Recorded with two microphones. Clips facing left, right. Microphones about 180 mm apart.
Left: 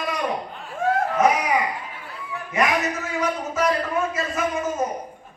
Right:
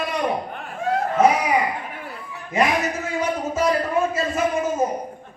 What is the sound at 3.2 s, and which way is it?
Speech, 30° right (ahead or behind).